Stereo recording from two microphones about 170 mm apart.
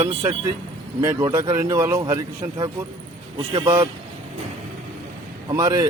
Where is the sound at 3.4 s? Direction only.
30° right (ahead or behind).